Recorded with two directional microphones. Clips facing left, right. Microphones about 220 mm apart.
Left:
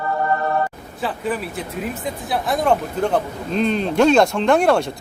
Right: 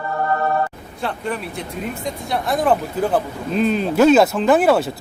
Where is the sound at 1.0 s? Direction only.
5° left (ahead or behind).